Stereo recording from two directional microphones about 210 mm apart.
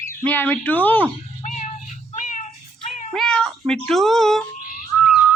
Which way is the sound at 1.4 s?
35° left (ahead or behind).